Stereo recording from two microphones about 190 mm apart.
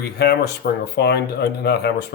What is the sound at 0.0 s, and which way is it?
Speech, 60° left (ahead or behind).